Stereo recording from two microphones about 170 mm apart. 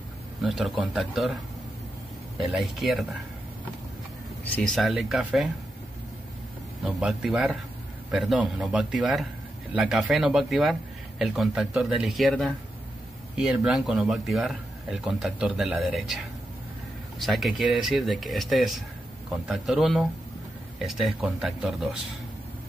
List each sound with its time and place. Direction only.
0.4 s a man's voice: centre (ahead or behind)
4.6 s a man's voice: centre (ahead or behind)
6.8 s a man's voice: 5° right (ahead or behind)
13.7 s a man's voice: centre (ahead or behind)